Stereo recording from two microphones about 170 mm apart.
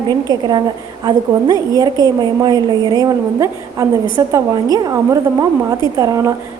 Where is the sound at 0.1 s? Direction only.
25° right (ahead or behind).